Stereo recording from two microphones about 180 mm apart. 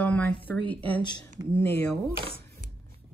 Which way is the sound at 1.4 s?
20° right (ahead or behind).